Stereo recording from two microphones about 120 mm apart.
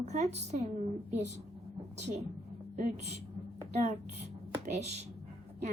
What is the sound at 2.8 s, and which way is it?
A woman's voice, 65° right (ahead or behind).